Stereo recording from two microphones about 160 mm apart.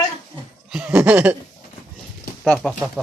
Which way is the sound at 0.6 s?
5° right (ahead or behind).